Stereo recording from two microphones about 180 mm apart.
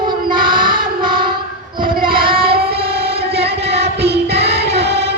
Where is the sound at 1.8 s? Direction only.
55° right (ahead or behind).